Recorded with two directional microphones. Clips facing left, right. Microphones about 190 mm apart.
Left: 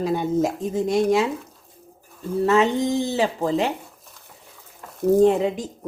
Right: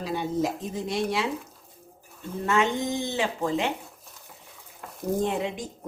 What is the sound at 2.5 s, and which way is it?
Speech, 35° left (ahead or behind).